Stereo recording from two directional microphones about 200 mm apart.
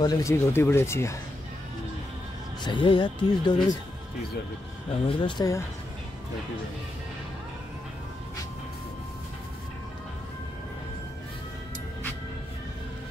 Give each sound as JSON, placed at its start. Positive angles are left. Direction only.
{"t": 0.0, "sound": "speech", "side_deg": 15}
{"t": 2.6, "sound": "speech", "side_deg": 25}
{"t": 5.0, "sound": "speech", "side_deg": 20}